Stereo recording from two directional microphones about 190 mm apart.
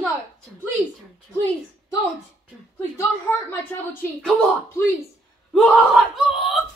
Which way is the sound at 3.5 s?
10° left (ahead or behind).